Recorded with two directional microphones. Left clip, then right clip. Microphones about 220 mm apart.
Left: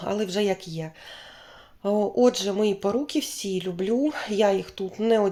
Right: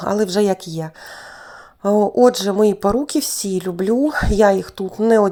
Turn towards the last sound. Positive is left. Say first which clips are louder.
# right 7 dB
turn(degrees=-30)  # may be behind; listen again after turning